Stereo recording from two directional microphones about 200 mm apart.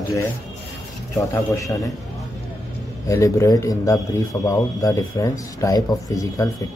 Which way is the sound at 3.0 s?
15° left (ahead or behind).